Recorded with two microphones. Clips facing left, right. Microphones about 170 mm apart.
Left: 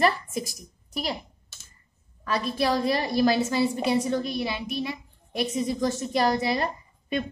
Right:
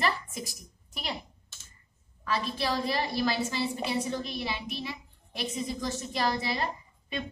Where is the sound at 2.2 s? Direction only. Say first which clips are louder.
Left 5 dB; 55° left (ahead or behind).